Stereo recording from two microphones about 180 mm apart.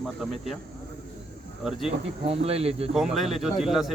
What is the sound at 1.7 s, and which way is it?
Speech, centre (ahead or behind).